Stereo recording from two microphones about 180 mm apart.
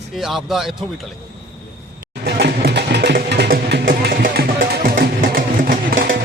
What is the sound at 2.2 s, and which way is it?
Music, 65° right (ahead or behind).